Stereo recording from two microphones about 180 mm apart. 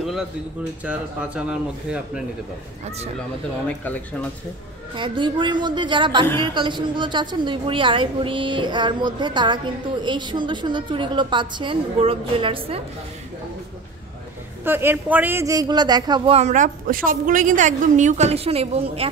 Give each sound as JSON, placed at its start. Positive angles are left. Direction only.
{"t": 0.0, "sound": "speech", "side_deg": 0}
{"t": 3.2, "sound": "speech", "side_deg": 10}
{"t": 4.9, "sound": "a woman's voice", "side_deg": -25}
{"t": 6.2, "sound": "speech", "side_deg": 15}
{"t": 6.5, "sound": "a woman's voice", "side_deg": -25}
{"t": 14.6, "sound": "a man's voice", "side_deg": -10}
{"t": 16.3, "sound": "a woman's voice", "side_deg": -40}